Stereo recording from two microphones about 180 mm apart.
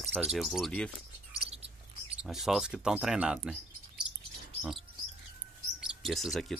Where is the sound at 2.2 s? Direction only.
5° right (ahead or behind).